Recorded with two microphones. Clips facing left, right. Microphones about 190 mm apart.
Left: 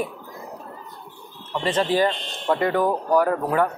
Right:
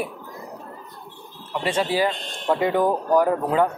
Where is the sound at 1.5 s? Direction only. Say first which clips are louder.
Left 1 dB; 10° right (ahead or behind).